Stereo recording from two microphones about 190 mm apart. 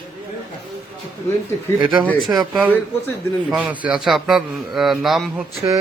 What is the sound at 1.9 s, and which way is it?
A man's voice, centre (ahead or behind).